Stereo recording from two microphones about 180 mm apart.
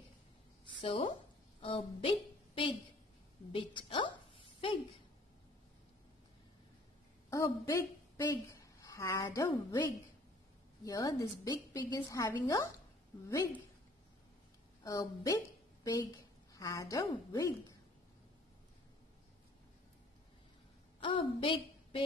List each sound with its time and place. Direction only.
0.7 s a woman's voice: 30° left (ahead or behind)
7.2 s a woman's voice: 15° left (ahead or behind)
14.8 s a woman's voice: 20° left (ahead or behind)
21.0 s a woman's voice: 30° left (ahead or behind)